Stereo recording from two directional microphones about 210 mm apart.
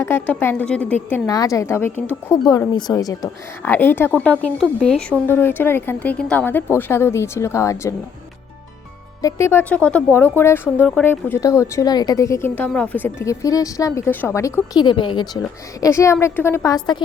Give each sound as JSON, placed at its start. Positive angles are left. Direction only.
{"t": 0.0, "sound": "speech", "side_deg": 10}
{"t": 9.2, "sound": "a woman's voice", "side_deg": 10}